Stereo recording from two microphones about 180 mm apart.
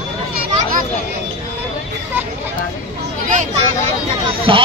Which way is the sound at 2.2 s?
10° right (ahead or behind).